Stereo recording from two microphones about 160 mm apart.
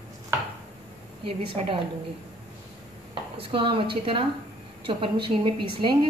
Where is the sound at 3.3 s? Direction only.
35° right (ahead or behind).